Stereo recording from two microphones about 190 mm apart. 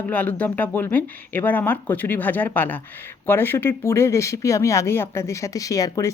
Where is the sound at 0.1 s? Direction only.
10° left (ahead or behind).